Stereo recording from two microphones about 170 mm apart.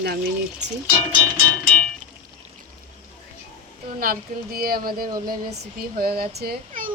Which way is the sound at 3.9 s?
60° right (ahead or behind).